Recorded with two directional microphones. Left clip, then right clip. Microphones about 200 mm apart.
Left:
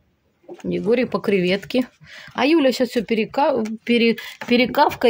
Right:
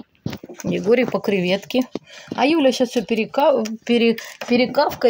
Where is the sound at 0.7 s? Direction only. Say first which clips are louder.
Right 2 dB; 10° left (ahead or behind).